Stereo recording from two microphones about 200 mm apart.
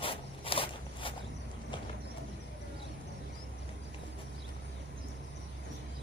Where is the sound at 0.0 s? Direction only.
25° left (ahead or behind).